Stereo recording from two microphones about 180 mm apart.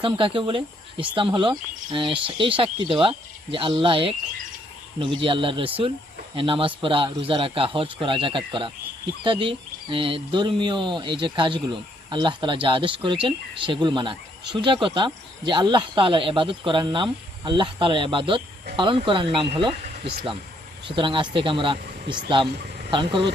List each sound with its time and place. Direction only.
0.0 s speech: 30° right (ahead or behind)
20.8 s speech: 30° right (ahead or behind)